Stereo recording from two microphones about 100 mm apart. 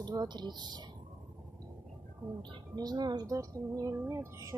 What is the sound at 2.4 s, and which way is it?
Speech, 45° right (ahead or behind).